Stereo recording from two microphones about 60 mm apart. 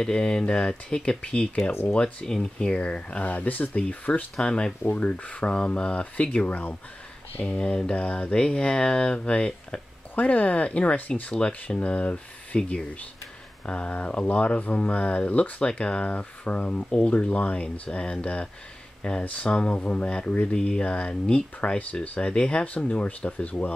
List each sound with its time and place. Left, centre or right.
0.0 s speech: centre
2.2 s speech: centre; by 4.3 s left
4.4 s speech: centre